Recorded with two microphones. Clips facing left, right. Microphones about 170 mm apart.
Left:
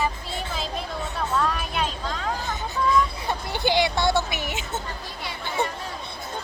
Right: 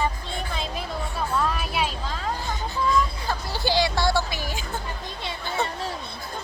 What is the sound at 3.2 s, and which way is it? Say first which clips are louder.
Speech: left 2 dB; 20° left (ahead or behind).